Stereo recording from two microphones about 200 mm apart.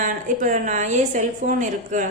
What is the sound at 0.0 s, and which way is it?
A woman's voice, 40° right (ahead or behind).